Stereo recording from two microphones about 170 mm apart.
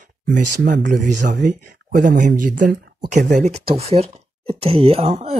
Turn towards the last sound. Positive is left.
turn(degrees=-40)  # may be behind; listen again after turning